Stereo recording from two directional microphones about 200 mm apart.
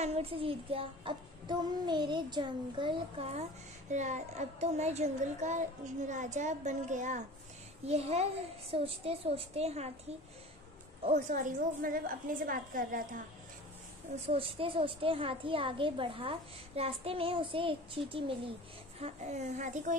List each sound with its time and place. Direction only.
0.0 s a child's voice: 30° right (ahead or behind)
11.1 s a woman's voice: 40° right (ahead or behind)
14.2 s a child's voice: 30° right (ahead or behind)